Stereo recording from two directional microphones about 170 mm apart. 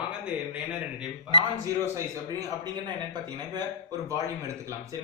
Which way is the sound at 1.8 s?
15° right (ahead or behind).